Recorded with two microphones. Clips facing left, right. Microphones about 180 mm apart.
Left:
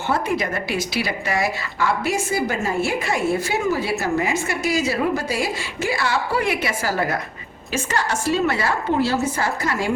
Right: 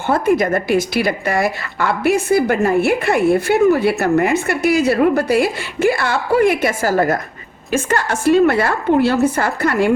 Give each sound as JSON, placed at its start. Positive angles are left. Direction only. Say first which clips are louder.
{"t": 0.1, "sound": "a woman's voice", "louder": "right 8 dB", "side_deg": -50}